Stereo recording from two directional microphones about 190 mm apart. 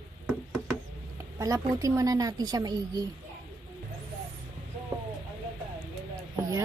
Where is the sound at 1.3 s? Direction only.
15° right (ahead or behind).